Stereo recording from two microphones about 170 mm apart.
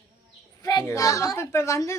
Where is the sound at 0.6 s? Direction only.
20° left (ahead or behind).